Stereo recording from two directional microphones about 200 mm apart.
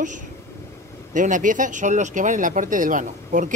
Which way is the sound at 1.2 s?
40° right (ahead or behind).